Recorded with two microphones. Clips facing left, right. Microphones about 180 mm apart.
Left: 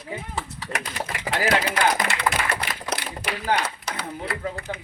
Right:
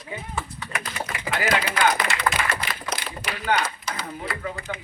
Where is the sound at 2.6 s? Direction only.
60° left (ahead or behind).